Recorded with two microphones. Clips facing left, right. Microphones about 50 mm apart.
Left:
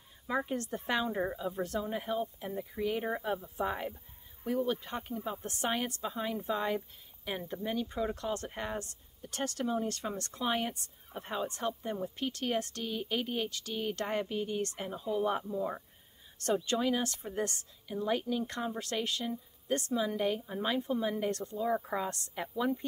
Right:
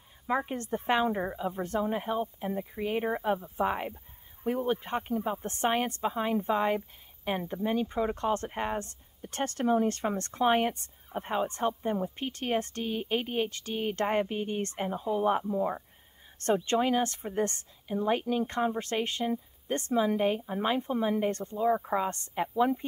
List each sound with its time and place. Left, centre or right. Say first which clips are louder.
0.5 s speech: right 4 dB; right
21.6 s speech: right 6 dB; right